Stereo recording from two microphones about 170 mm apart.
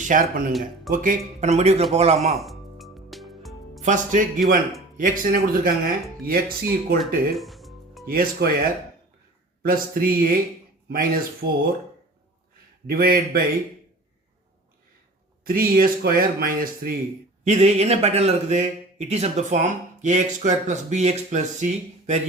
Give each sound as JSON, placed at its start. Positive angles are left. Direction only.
{"t": 0.0, "sound": "a man's voice", "side_deg": -50}
{"t": 2.3, "sound": "music", "side_deg": 0}
{"t": 3.8, "sound": "speech", "side_deg": -50}
{"t": 7.3, "sound": "music", "side_deg": 0}
{"t": 8.0, "sound": "speech", "side_deg": -60}
{"t": 9.6, "sound": "speech", "side_deg": -55}
{"t": 12.9, "sound": "speech", "side_deg": -60}
{"t": 15.4, "sound": "speech", "side_deg": -60}
{"t": 17.4, "sound": "a man's voice", "side_deg": -40}